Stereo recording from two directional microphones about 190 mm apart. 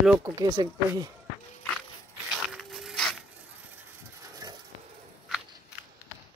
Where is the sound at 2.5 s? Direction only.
Centre (ahead or behind).